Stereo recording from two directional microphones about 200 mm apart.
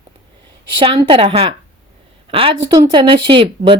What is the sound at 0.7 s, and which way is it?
A woman's voice, 25° right (ahead or behind).